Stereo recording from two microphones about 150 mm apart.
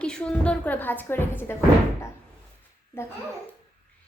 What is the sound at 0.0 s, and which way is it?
A woman's voice, 5° left (ahead or behind).